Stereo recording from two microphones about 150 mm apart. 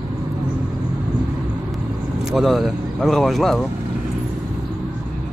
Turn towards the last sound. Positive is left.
turn(degrees=0)  # may be behind; listen again after turning